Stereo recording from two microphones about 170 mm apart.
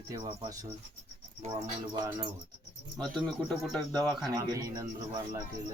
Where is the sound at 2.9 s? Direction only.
5° left (ahead or behind).